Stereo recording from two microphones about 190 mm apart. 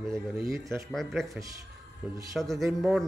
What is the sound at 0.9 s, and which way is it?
Speech, centre (ahead or behind).